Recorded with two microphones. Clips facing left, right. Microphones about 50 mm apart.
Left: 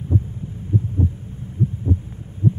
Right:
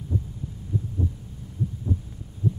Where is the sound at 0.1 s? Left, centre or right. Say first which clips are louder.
Left 7 dB; left.